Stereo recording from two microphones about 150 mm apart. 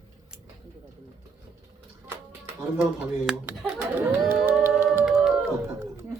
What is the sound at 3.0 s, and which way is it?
Speech, 10° right (ahead or behind).